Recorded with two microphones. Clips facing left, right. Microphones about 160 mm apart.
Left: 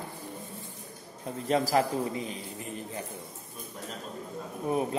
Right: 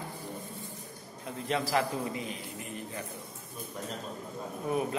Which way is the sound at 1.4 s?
40° left (ahead or behind).